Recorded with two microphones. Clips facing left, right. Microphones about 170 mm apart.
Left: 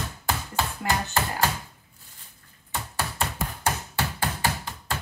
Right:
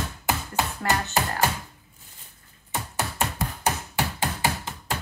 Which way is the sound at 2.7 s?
20° right (ahead or behind).